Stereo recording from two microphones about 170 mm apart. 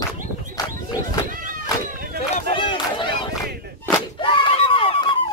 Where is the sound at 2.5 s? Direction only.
30° left (ahead or behind).